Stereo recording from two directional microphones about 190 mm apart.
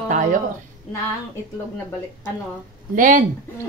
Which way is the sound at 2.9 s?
45° right (ahead or behind).